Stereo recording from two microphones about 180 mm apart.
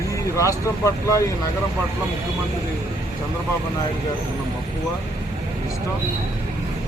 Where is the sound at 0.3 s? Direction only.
15° left (ahead or behind).